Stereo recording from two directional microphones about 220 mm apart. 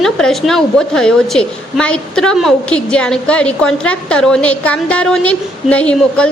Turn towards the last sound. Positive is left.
turn(degrees=5)  # may be behind; listen again after turning